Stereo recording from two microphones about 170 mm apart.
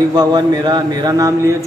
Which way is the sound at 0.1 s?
25° right (ahead or behind).